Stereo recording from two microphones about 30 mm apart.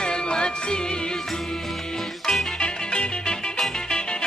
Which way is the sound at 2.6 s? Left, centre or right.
Left.